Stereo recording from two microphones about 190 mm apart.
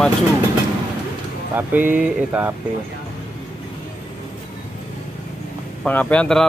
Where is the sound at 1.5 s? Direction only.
10° right (ahead or behind).